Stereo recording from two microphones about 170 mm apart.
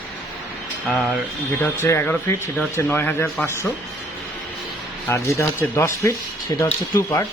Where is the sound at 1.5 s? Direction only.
15° left (ahead or behind).